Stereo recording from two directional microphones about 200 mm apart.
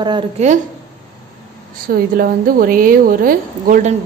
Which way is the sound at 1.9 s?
45° right (ahead or behind).